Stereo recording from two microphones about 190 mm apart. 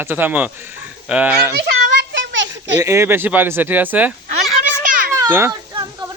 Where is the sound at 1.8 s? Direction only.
65° right (ahead or behind).